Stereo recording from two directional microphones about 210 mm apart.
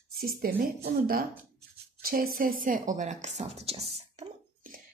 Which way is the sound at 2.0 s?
45° right (ahead or behind).